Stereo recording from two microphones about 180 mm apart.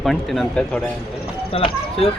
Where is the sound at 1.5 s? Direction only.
30° left (ahead or behind).